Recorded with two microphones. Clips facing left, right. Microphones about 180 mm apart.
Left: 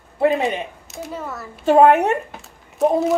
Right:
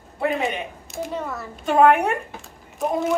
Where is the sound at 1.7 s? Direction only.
35° left (ahead or behind).